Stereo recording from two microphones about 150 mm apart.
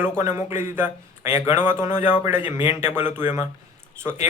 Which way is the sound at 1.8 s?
55° left (ahead or behind).